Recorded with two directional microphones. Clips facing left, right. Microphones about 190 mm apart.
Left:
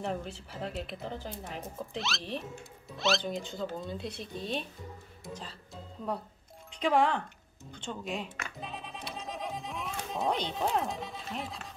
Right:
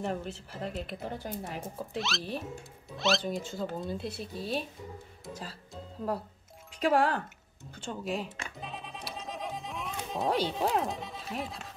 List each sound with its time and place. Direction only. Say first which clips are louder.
0.0 s speech: right 1 dB; centre (ahead or behind)
6.8 s speech: right 1 dB; 5° right (ahead or behind)
8.5 s a sound: even; centre (ahead or behind)